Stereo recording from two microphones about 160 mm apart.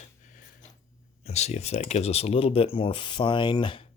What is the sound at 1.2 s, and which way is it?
Speech, 45° left (ahead or behind).